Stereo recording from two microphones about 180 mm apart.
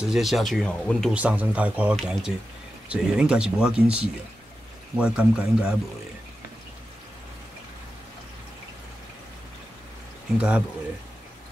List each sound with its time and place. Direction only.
0.0 s speech: centre (ahead or behind)
1.1 s speech: 10° right (ahead or behind)
4.9 s speech: 5° right (ahead or behind)
10.3 s speech: 5° right (ahead or behind)